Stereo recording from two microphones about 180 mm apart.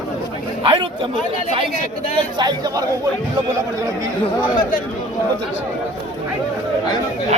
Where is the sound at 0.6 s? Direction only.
30° right (ahead or behind).